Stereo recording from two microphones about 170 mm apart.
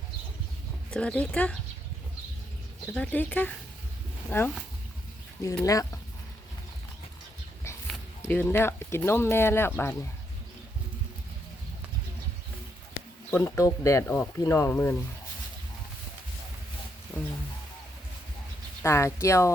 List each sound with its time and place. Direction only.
0.9 s speech: 5° left (ahead or behind)
2.8 s speech: 10° left (ahead or behind)
5.6 s speech: 20° left (ahead or behind)
8.2 s speech: 10° left (ahead or behind)
13.4 s speech: 20° left (ahead or behind)
17.1 s a sound: 10° left (ahead or behind)
18.8 s speech: 15° left (ahead or behind)